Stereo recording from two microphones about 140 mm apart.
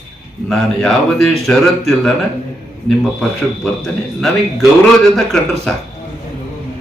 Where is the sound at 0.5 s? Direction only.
Centre (ahead or behind).